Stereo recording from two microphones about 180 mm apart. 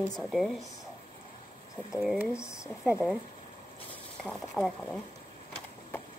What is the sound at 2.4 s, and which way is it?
Speech, 15° left (ahead or behind).